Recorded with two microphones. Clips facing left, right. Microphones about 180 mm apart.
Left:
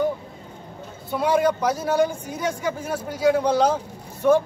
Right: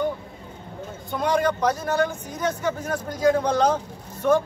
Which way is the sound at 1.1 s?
10° left (ahead or behind).